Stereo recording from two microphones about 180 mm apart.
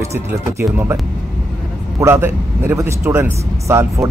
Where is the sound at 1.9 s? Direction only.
15° right (ahead or behind).